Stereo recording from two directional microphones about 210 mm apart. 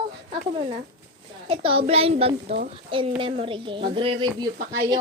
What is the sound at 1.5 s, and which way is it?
Speech, 25° right (ahead or behind).